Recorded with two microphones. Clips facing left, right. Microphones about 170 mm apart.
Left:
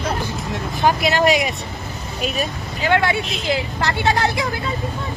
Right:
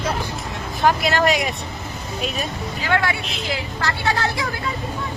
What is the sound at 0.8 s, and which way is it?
Speech, centre (ahead or behind).